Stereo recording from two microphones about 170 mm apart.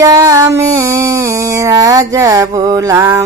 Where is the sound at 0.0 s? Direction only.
20° right (ahead or behind).